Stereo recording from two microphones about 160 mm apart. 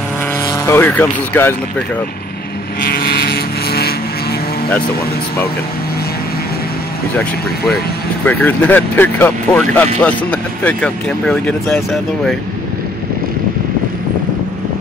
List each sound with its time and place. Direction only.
0.7 s speech: 15° left (ahead or behind)
2.9 s vehicle: 80° left
8.3 s speech: 10° left (ahead or behind)